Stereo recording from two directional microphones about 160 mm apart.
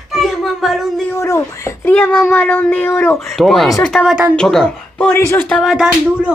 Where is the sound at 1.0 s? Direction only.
15° left (ahead or behind).